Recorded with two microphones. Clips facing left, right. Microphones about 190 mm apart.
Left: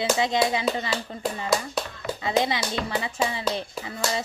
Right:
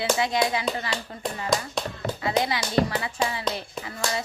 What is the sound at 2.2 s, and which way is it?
Speech, 25° left (ahead or behind).